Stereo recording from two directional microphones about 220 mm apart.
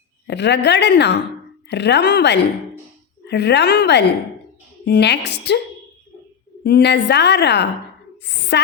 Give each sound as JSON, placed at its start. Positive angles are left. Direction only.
{"t": 0.3, "sound": "a woman's voice", "side_deg": 50}
{"t": 6.7, "sound": "a woman's voice", "side_deg": 50}